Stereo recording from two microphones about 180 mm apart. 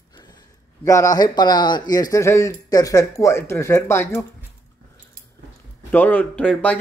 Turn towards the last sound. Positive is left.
turn(degrees=5)  # may be behind; listen again after turning